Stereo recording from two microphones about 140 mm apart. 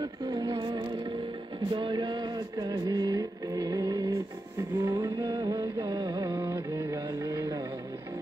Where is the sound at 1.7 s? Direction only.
35° right (ahead or behind).